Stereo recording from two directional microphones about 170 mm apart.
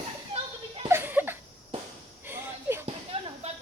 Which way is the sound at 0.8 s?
10° right (ahead or behind).